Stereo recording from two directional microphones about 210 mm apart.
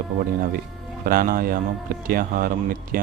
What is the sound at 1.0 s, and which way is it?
A man's voice, 45° right (ahead or behind).